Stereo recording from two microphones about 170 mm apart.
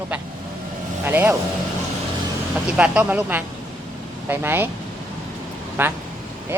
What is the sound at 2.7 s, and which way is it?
Speech, 10° right (ahead or behind).